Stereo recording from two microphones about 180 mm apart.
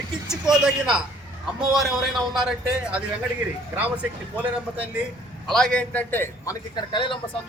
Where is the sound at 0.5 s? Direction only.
5° right (ahead or behind).